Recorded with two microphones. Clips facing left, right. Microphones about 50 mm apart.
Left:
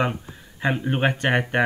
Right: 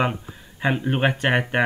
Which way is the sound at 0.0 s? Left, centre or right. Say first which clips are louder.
Right 1 dB; centre.